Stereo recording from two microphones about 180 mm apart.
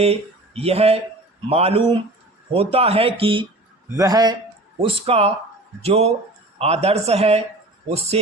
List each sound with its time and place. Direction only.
0.0 s speech: 35° right (ahead or behind)
4.8 s speech: 35° right (ahead or behind)